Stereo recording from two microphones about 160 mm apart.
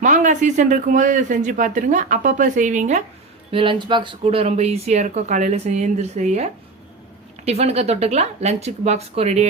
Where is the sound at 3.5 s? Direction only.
30° right (ahead or behind).